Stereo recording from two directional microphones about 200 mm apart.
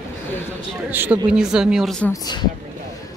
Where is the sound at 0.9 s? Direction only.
10° right (ahead or behind).